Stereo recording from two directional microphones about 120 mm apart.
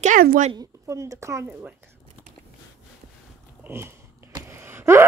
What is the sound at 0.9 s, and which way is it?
Speech, 25° right (ahead or behind).